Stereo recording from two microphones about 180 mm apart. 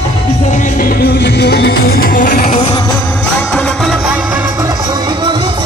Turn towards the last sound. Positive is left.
turn(degrees=-25)  # may be behind; listen again after turning